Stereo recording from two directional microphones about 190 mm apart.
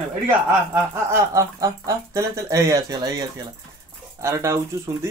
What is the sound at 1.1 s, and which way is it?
Speech, 15° right (ahead or behind).